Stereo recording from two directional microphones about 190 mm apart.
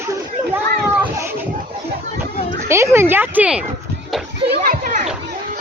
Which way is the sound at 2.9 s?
10° right (ahead or behind).